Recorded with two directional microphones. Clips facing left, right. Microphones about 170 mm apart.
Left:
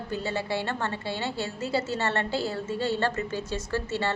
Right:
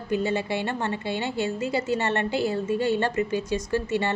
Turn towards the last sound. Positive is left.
turn(degrees=-15)  # may be behind; listen again after turning